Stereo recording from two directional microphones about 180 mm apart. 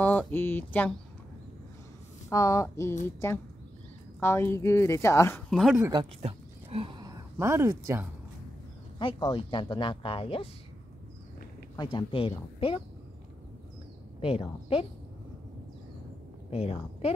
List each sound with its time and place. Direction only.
0.0 s a woman's voice: 10° left (ahead or behind)
2.2 s a woman's voice: 20° left (ahead or behind)
4.2 s a woman's voice: 15° left (ahead or behind)
5.5 s speech: centre (ahead or behind)
6.2 s a sound: 30° right (ahead or behind); by 8.1 s 15° right (ahead or behind)
8.9 s speech: 25° left (ahead or behind)
11.7 s speech: 20° left (ahead or behind)
14.2 s a woman's voice: 30° left (ahead or behind)
16.4 s speech: 35° left (ahead or behind)